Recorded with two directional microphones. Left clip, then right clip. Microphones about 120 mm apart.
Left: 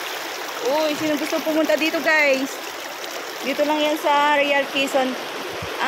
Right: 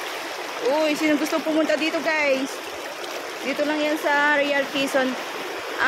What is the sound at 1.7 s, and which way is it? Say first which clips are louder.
Speech: left 4 dB; 15° left (ahead or behind).